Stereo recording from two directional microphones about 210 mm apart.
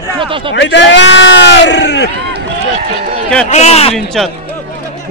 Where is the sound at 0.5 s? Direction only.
55° left (ahead or behind).